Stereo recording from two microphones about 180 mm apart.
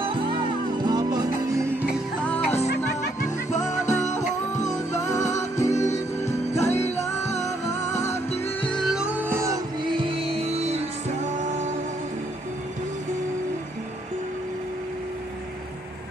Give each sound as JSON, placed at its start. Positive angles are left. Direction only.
{"t": 0.0, "sound": "music", "side_deg": -30}
{"t": 2.2, "sound": "music", "side_deg": 10}
{"t": 4.1, "sound": "music", "side_deg": 40}
{"t": 4.6, "sound": "music", "side_deg": 15}
{"t": 8.6, "sound": "music", "side_deg": 0}
{"t": 9.1, "sound": "music", "side_deg": -10}
{"t": 9.9, "sound": "music", "side_deg": -30}